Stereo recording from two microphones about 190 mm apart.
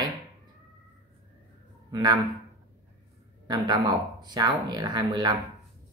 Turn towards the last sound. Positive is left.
turn(degrees=-20)  # may be behind; listen again after turning